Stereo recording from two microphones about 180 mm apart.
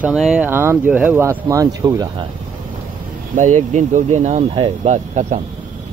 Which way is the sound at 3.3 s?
45° right (ahead or behind).